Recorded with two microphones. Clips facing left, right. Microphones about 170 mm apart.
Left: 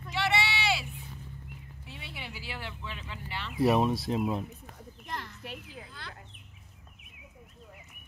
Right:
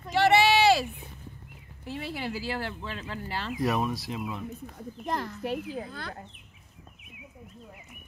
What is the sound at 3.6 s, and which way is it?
Speech, 25° left (ahead or behind).